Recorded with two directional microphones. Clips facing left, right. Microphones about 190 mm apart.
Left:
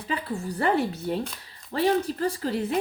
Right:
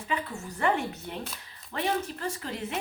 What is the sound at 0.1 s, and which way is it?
Speech, 35° left (ahead or behind).